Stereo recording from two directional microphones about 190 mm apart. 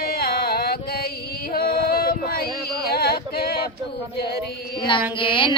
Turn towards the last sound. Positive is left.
turn(degrees=25)  # may be behind; listen again after turning